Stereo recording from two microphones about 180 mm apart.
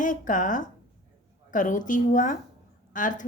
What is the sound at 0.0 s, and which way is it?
A woman's voice, 45° left (ahead or behind).